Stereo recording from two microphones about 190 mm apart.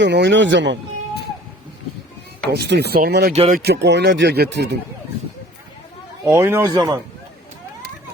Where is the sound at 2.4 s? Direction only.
60° right (ahead or behind).